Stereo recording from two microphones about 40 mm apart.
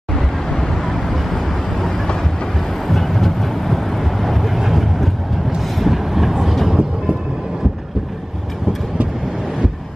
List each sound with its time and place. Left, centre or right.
0.1 s vehicle: centre
6.7 s train: right